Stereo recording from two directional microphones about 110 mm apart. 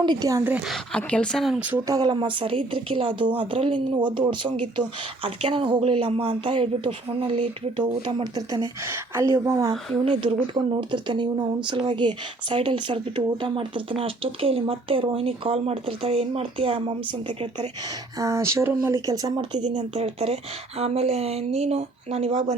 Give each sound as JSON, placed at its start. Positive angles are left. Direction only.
{"t": 0.0, "sound": "speech", "side_deg": -40}
{"t": 0.9, "sound": "speech", "side_deg": 10}
{"t": 1.9, "sound": "speech", "side_deg": -45}
{"t": 6.1, "sound": "a woman's voice", "side_deg": -70}
{"t": 6.4, "sound": "speech", "side_deg": -50}
{"t": 10.2, "sound": "speech", "side_deg": -55}
{"t": 18.2, "sound": "speech", "side_deg": -30}
{"t": 19.7, "sound": "a woman's voice", "side_deg": -80}